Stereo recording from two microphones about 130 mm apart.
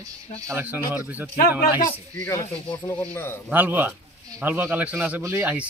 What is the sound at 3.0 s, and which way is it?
Speech, 15° left (ahead or behind).